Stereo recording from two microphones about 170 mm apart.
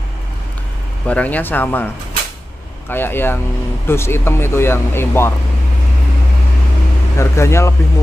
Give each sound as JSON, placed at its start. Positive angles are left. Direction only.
{"t": 1.0, "sound": "speech", "side_deg": 10}
{"t": 2.9, "sound": "speech", "side_deg": 15}
{"t": 7.2, "sound": "speech", "side_deg": 15}